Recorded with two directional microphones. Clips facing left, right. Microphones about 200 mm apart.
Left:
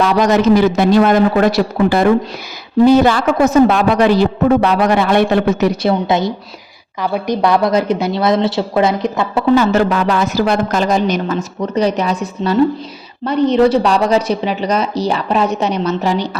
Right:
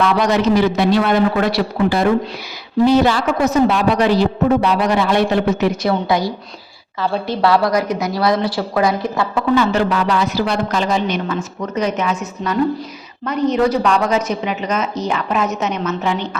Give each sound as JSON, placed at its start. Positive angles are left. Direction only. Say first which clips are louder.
{"t": 0.0, "sound": "a woman's voice", "louder": "left 3 dB", "side_deg": 45}
{"t": 5.8, "sound": "a woman's voice", "louder": "left 3 dB", "side_deg": 25}
{"t": 9.3, "sound": "speech", "louder": "left 4 dB", "side_deg": 40}